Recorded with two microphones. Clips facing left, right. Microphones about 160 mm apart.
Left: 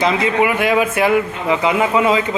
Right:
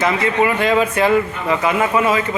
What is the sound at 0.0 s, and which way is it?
Speech, 20° left (ahead or behind).